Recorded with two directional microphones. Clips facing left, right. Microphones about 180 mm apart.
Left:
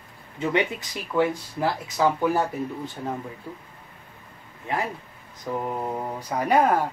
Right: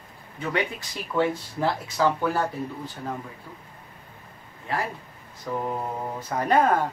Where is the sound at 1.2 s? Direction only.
15° left (ahead or behind).